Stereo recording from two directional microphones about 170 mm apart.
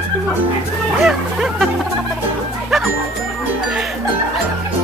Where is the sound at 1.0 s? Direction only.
5° right (ahead or behind).